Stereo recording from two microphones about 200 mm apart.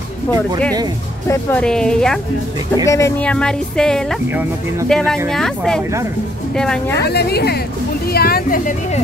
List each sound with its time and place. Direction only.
1.3 s speech: 5° left (ahead or behind)
2.7 s speech: 15° left (ahead or behind)
4.3 s speech: 10° right (ahead or behind)
4.8 s speech: 5° left (ahead or behind)
7.0 s a woman's voice: 55° left (ahead or behind)